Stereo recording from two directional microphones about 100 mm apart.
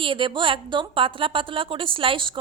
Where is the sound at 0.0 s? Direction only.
55° right (ahead or behind).